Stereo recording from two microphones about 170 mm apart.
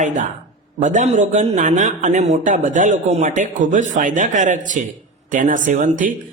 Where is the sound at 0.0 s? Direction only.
50° right (ahead or behind).